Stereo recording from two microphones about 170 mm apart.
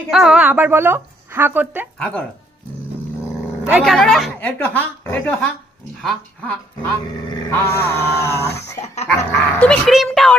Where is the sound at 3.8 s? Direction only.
5° left (ahead or behind).